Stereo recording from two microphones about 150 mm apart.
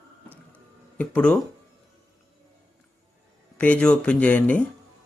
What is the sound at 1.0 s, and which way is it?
Speech, 10° left (ahead or behind).